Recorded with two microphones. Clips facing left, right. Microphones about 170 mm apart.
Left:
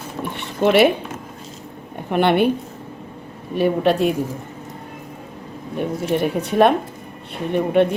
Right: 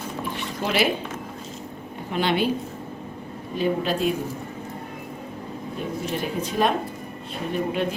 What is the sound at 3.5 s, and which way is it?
Speech, 65° left (ahead or behind).